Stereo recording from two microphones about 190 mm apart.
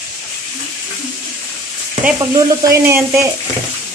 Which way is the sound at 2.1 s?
20° right (ahead or behind).